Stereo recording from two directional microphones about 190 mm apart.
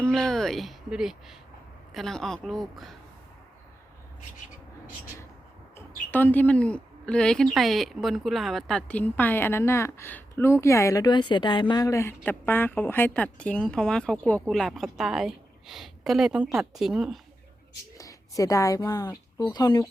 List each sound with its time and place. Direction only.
0.0 s speech: 5° left (ahead or behind)
5.7 s a woman's voice: 10° left (ahead or behind)
17.9 s speech: 15° left (ahead or behind)